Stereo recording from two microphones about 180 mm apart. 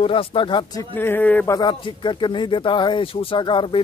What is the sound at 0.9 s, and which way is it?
Speech, 10° left (ahead or behind).